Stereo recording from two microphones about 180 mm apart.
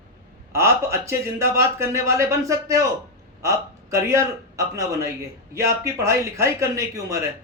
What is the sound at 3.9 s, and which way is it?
A man's voice, 15° right (ahead or behind).